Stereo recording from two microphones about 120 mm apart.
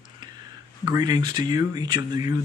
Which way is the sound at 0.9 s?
35° right (ahead or behind).